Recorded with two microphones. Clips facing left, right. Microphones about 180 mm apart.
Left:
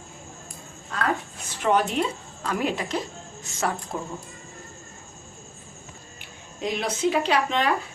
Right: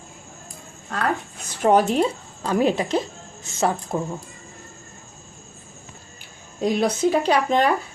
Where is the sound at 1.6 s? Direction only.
40° right (ahead or behind).